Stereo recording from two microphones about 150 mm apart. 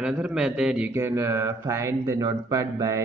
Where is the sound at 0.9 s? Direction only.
15° right (ahead or behind).